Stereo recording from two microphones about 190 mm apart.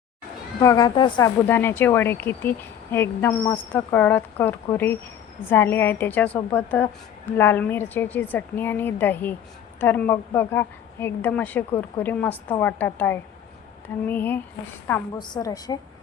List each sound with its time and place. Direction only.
0.6 s a woman's voice: 20° left (ahead or behind)
1.5 s speech: 10° left (ahead or behind)
15.2 s a woman's voice: 20° left (ahead or behind)